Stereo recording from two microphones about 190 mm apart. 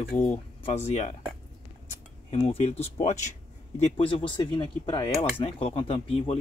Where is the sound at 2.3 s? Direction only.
35° left (ahead or behind).